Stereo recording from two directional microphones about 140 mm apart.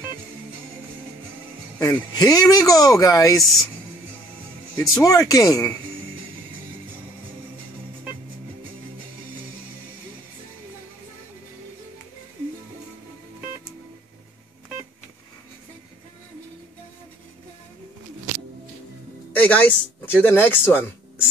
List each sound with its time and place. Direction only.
1.8 s speech: 25° left (ahead or behind)
4.7 s speech: 25° left (ahead or behind)
19.3 s music: 10° left (ahead or behind)
20.1 s speech: 15° left (ahead or behind)